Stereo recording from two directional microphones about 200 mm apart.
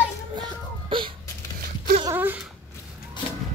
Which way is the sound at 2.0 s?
10° right (ahead or behind).